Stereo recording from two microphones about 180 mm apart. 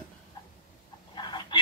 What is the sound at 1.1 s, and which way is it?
Chicken, 25° left (ahead or behind).